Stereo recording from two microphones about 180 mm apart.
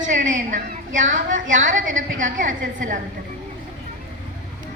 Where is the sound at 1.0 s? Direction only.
45° right (ahead or behind).